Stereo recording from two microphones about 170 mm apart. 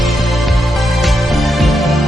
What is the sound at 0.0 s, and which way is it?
Music, centre (ahead or behind).